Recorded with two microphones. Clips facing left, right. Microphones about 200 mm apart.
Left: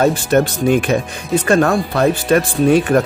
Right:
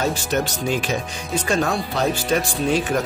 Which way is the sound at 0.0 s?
55° left (ahead or behind).